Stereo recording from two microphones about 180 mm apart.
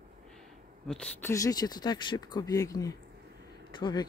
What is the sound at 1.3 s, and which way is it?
Speech, 20° left (ahead or behind).